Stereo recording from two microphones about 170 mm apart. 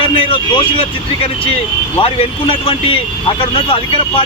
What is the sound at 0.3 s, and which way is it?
Speech, 30° left (ahead or behind).